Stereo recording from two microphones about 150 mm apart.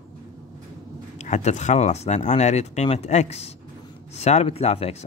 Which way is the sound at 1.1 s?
50° left (ahead or behind).